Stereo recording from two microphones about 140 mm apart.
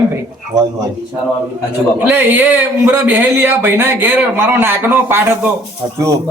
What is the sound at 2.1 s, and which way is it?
Speech, 15° right (ahead or behind).